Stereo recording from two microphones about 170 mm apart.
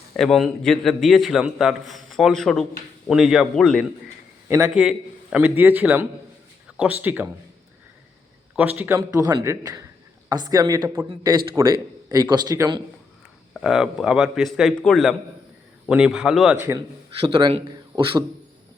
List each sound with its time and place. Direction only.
0.2 s a man's voice: centre (ahead or behind)
4.4 s a man's voice: 15° right (ahead or behind)
4.7 s a man's voice: 5° right (ahead or behind)
8.5 s a man's voice: 10° right (ahead or behind)
9.0 s speech: 20° right (ahead or behind)
13.5 s a man's voice: centre (ahead or behind)
17.2 s speech: 25° right (ahead or behind)